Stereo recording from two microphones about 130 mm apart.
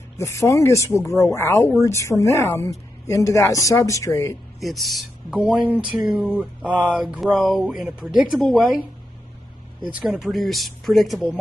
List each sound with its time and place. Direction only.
0.2 s speech: 25° left (ahead or behind)
4.6 s speech: centre (ahead or behind)
9.9 s speech: 5° right (ahead or behind)